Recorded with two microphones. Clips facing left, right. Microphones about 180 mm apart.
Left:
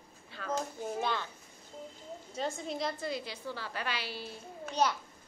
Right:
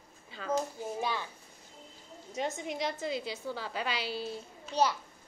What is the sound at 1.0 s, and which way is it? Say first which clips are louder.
Speech: even; 10° right (ahead or behind).